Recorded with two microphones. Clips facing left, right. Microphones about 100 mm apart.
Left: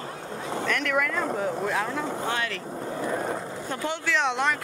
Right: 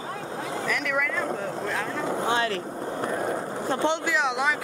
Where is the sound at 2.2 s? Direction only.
25° right (ahead or behind).